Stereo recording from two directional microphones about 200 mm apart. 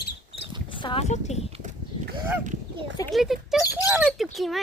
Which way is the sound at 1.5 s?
40° right (ahead or behind).